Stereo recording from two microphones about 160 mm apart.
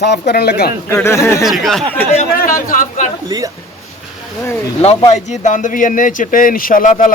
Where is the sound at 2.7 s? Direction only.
55° left (ahead or behind).